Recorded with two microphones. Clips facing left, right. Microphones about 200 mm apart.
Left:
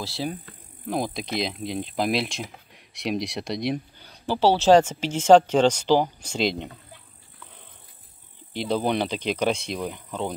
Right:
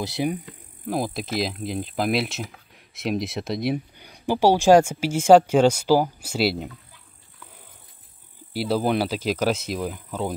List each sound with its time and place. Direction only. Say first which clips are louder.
0.0 s insect: right 5 dB; 20° right (ahead or behind)
0.9 s speech: right 1 dB; 5° right (ahead or behind)
8.5 s speech: right 2 dB; 5° right (ahead or behind)